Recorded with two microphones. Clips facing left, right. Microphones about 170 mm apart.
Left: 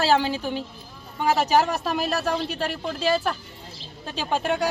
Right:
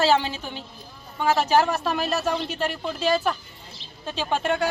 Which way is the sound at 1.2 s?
5° left (ahead or behind).